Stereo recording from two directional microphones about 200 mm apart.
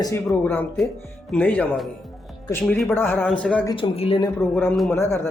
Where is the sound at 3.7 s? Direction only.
25° left (ahead or behind).